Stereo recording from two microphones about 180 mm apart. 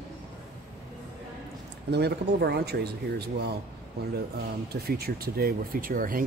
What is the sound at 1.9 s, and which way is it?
Speech, 65° right (ahead or behind).